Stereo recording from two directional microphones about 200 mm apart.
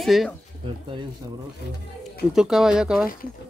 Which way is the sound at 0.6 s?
25° right (ahead or behind).